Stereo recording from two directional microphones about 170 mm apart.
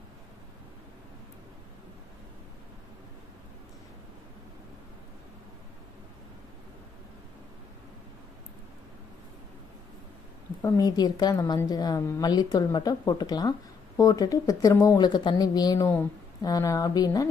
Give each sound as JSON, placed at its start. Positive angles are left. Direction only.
{"t": 10.6, "sound": "a woman's voice", "side_deg": 20}